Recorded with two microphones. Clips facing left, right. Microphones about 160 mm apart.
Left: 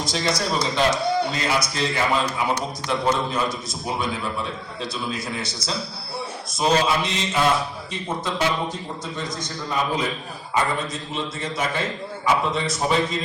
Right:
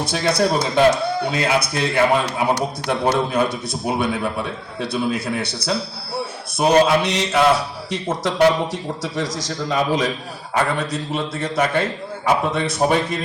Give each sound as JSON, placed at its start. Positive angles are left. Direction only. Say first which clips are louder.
{"t": 0.0, "sound": "a man's voice", "louder": "right 6 dB", "side_deg": -60}
{"t": 10.5, "sound": "a man's voice", "louder": "right 3 dB", "side_deg": -65}